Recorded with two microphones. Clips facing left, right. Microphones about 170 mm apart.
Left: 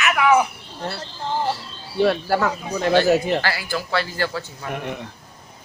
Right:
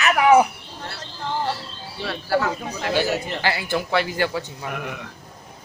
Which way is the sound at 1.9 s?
50° left (ahead or behind).